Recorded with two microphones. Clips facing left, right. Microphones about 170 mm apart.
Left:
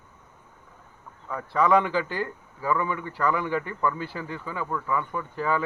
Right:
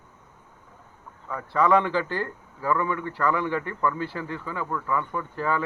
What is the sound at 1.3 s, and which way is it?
Speech, 15° left (ahead or behind).